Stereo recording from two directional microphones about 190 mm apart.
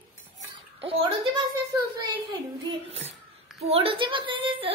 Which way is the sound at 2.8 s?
35° right (ahead or behind).